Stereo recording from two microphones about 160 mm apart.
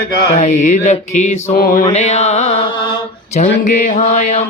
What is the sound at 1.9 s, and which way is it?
Mantra, 45° left (ahead or behind).